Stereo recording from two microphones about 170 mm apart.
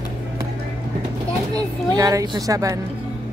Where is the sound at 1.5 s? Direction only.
20° right (ahead or behind).